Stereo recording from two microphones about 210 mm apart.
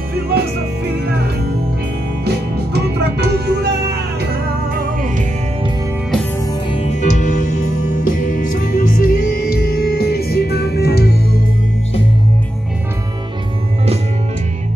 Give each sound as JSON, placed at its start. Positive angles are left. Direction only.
{"t": 0.1, "sound": "music", "side_deg": -50}
{"t": 6.7, "sound": "music", "side_deg": 30}